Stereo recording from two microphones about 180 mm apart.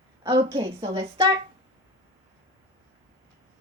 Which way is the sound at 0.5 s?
35° right (ahead or behind).